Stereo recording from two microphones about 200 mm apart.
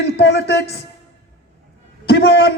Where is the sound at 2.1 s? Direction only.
55° left (ahead or behind).